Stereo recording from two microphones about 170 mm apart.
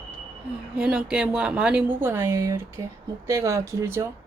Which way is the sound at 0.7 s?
5° right (ahead or behind).